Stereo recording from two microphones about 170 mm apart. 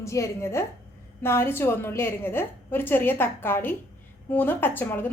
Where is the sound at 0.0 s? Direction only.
15° left (ahead or behind).